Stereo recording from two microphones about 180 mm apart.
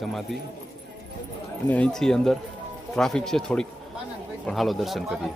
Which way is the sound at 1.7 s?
5° left (ahead or behind).